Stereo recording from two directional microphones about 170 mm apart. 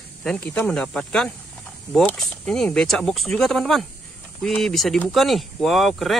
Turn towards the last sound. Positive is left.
turn(degrees=0)  # may be behind; listen again after turning